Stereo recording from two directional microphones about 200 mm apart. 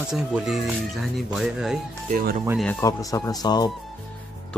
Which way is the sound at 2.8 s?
15° left (ahead or behind).